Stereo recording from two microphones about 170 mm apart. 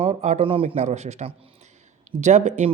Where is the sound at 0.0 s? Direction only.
40° right (ahead or behind).